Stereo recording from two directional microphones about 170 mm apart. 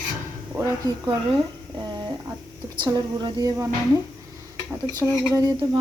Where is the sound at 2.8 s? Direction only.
25° right (ahead or behind).